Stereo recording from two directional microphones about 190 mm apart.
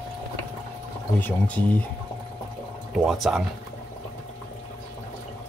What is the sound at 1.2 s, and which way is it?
Speech, 10° left (ahead or behind).